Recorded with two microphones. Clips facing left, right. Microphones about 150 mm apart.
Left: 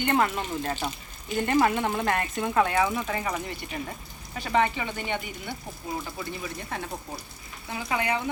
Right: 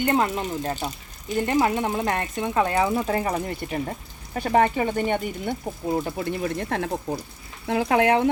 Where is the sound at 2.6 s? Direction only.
30° right (ahead or behind).